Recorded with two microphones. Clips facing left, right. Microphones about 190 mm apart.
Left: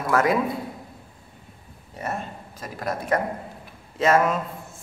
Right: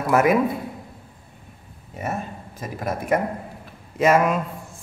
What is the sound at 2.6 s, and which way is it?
A man's voice, 20° right (ahead or behind).